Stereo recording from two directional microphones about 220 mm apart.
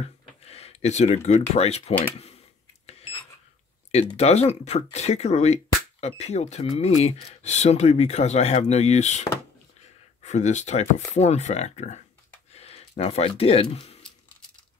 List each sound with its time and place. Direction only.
0.5 s a sound: 30° left (ahead or behind)
1.5 s speech: 30° left (ahead or behind)
4.2 s speech: 30° left (ahead or behind)